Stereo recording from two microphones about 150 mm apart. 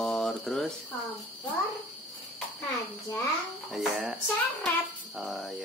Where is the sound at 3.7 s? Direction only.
5° right (ahead or behind).